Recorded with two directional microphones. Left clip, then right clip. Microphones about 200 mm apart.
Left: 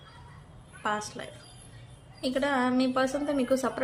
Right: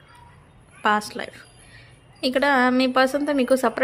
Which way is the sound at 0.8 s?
50° right (ahead or behind).